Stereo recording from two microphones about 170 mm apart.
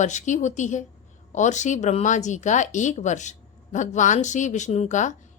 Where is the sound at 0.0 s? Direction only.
45° left (ahead or behind).